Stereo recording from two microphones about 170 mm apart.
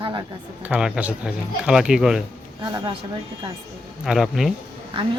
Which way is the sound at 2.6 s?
25° right (ahead or behind).